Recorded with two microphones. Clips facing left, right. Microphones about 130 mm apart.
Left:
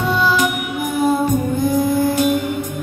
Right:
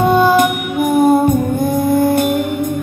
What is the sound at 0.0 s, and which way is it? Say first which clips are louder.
Music: right 6 dB; 55° right (ahead or behind).